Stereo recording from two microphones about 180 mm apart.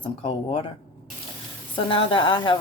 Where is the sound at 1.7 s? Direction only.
30° left (ahead or behind).